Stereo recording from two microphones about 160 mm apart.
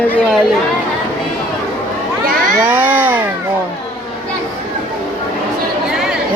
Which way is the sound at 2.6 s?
10° right (ahead or behind).